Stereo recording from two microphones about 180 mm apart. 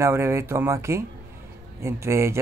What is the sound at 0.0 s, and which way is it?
Speech, 15° right (ahead or behind).